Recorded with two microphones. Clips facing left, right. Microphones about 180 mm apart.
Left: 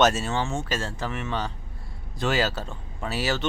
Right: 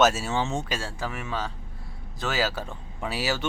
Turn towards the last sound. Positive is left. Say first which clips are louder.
# left 1 dB
turn(degrees=-10)  # may be behind; listen again after turning